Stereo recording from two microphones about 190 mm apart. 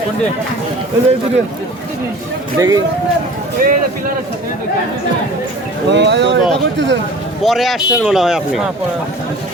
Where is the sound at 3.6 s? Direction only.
50° right (ahead or behind).